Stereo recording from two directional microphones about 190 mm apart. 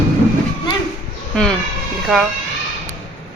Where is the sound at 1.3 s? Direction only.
5° left (ahead or behind).